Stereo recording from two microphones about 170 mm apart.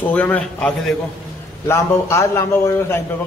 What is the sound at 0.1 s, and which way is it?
Speech, 10° left (ahead or behind).